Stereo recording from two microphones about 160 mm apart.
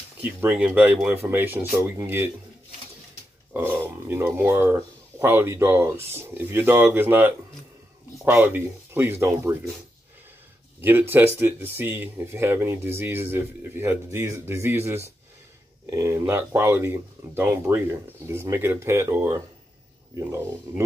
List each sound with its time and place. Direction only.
0.2 s speech: 10° right (ahead or behind)
3.5 s speech: 15° right (ahead or behind)
10.8 s speech: 15° right (ahead or behind)